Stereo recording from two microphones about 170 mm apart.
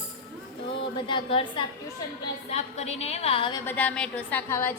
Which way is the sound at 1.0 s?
30° left (ahead or behind).